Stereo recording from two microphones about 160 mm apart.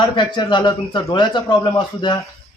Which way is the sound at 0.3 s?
30° left (ahead or behind).